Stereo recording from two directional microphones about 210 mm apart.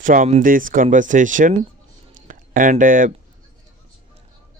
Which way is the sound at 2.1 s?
40° right (ahead or behind).